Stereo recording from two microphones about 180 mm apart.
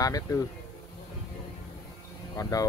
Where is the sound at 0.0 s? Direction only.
20° left (ahead or behind).